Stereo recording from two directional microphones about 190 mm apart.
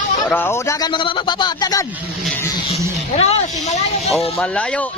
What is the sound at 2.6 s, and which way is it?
Speech, 35° left (ahead or behind).